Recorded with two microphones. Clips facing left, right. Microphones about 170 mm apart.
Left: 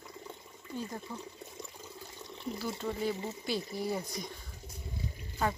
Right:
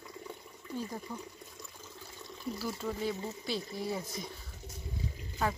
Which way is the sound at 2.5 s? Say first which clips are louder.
Left 1 dB; centre (ahead or behind).